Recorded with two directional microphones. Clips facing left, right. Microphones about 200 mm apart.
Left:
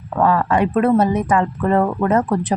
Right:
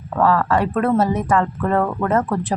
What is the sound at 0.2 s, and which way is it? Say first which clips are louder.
Speech: left 1 dB; 15° left (ahead or behind).